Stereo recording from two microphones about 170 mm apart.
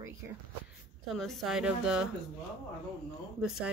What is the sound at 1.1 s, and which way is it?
Speech, centre (ahead or behind).